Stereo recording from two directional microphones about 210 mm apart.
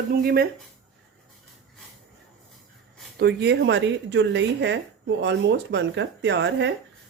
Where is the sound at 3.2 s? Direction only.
55° right (ahead or behind).